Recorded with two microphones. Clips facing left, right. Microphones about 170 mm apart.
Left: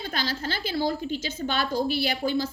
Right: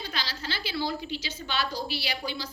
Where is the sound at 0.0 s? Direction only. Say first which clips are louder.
Left 6 dB; 50° left (ahead or behind).